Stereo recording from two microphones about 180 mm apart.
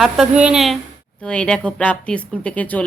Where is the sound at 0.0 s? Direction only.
5° right (ahead or behind).